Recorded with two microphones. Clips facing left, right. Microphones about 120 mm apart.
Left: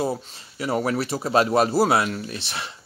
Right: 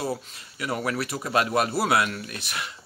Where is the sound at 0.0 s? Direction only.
30° left (ahead or behind).